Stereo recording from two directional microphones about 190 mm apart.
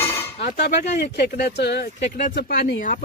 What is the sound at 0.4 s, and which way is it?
Speech, 55° left (ahead or behind).